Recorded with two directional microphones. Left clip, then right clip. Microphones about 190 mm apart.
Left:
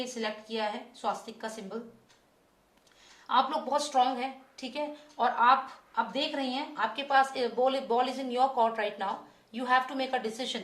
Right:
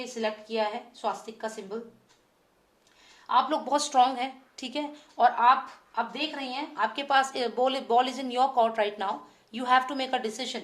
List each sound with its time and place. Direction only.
0.0 s a woman's voice: 35° right (ahead or behind)
3.2 s a woman's voice: 40° right (ahead or behind)